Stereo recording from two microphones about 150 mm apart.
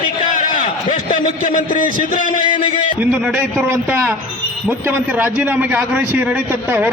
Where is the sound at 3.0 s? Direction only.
10° right (ahead or behind).